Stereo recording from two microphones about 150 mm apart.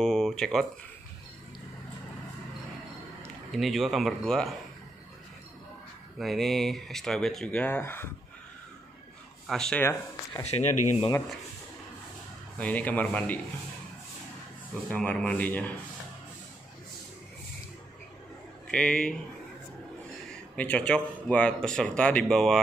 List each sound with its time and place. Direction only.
0.0 s speech: centre (ahead or behind)
3.5 s speech: centre (ahead or behind)
6.1 s speech: centre (ahead or behind)
9.5 s speech: 5° left (ahead or behind)
10.4 s speech: 45° left (ahead or behind)
12.5 s speech: 10° left (ahead or behind)
14.9 s speech: 10° left (ahead or behind)
18.7 s speech: 5° left (ahead or behind)
20.5 s speech: 10° left (ahead or behind)